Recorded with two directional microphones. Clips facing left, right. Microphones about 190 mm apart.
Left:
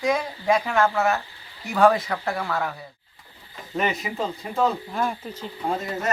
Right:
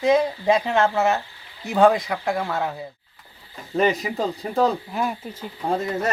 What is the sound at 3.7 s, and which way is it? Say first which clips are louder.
Speech: right 5 dB; 35° right (ahead or behind).